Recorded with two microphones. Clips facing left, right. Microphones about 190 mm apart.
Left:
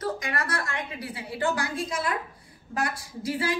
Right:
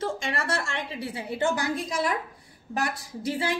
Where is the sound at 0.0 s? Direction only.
25° right (ahead or behind).